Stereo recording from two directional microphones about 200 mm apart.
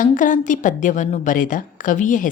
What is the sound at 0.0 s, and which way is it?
A woman's voice, 40° left (ahead or behind).